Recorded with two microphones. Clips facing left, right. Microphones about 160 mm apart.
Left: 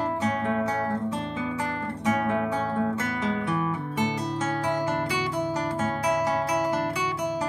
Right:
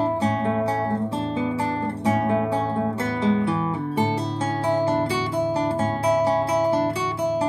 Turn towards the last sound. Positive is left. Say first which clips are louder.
# right 4 dB
turn(degrees=-30)  # may be behind; listen again after turning